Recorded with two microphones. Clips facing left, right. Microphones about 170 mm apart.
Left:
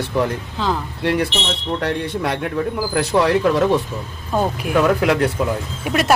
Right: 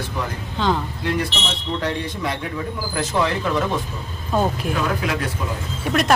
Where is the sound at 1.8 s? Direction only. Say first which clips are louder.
Left 3 dB; 65° left (ahead or behind).